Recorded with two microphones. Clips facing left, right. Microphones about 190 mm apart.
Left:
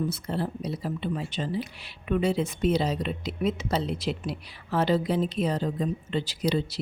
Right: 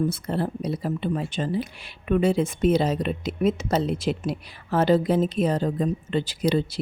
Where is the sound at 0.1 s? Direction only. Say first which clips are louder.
Right 3 dB; 50° right (ahead or behind).